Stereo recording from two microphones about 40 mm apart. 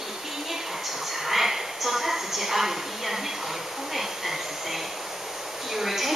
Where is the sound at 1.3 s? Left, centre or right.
Centre.